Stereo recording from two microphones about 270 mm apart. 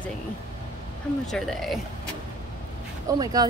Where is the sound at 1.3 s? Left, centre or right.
Centre.